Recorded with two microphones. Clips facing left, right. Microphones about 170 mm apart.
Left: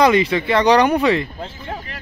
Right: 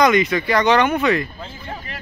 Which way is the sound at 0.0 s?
30° left (ahead or behind).